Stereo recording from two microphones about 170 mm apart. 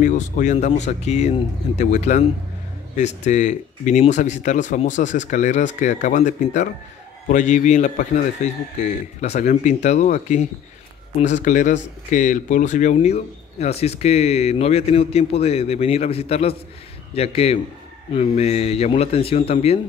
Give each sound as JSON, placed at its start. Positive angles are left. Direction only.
{"t": 0.0, "sound": "a man's voice", "side_deg": 45}
{"t": 3.3, "sound": "a man's voice", "side_deg": 45}